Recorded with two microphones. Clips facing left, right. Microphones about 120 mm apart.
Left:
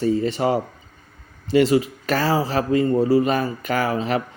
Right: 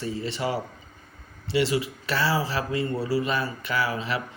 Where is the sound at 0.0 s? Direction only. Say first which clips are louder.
Left 9 dB; 45° left (ahead or behind).